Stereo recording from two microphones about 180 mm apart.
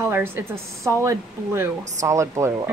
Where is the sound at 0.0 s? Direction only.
10° right (ahead or behind).